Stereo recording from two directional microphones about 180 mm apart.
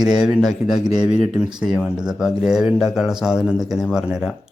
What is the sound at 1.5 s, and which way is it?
Speech, 5° right (ahead or behind).